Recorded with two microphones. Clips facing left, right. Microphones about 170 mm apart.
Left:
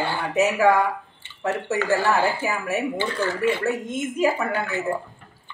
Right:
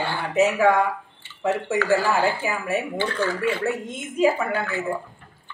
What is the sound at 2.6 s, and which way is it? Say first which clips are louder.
Speech: right 1 dB; 5° left (ahead or behind).